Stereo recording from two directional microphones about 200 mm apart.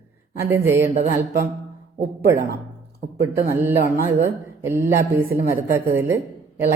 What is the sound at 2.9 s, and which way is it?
Speech, 55° right (ahead or behind).